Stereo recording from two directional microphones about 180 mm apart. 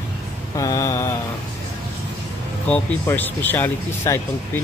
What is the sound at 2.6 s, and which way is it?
Speech, 10° left (ahead or behind).